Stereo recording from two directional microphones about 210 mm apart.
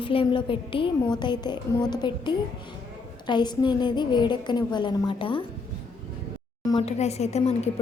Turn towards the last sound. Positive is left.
turn(degrees=30)  # may be behind; listen again after turning